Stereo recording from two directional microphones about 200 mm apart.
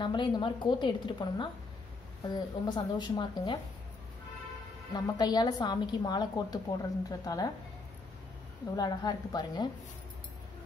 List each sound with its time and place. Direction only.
0.0 s a woman's voice: 25° left (ahead or behind)
4.9 s a woman's voice: 20° left (ahead or behind)
8.7 s a woman's voice: 20° left (ahead or behind)